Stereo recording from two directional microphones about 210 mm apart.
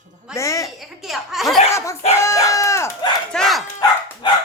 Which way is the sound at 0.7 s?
Centre (ahead or behind).